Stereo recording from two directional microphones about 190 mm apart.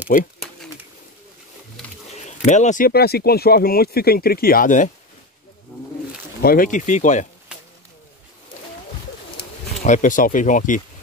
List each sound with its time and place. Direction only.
0.1 s speech: 45° left (ahead or behind)
2.2 s speech: 40° left (ahead or behind)
6.4 s speech: 50° left (ahead or behind)
9.8 s speech: 40° left (ahead or behind)